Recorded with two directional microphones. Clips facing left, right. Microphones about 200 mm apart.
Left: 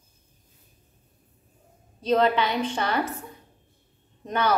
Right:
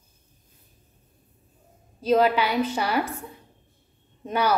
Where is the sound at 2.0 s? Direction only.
10° right (ahead or behind).